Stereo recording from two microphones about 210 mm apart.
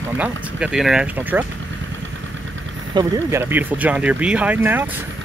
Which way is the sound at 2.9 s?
15° right (ahead or behind).